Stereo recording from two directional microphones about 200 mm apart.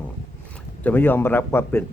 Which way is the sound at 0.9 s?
10° left (ahead or behind).